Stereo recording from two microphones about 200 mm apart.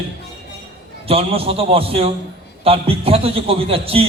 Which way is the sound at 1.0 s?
30° right (ahead or behind).